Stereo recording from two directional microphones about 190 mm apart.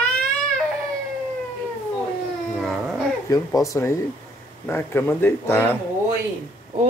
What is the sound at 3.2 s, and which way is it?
A man's voice, 20° left (ahead or behind).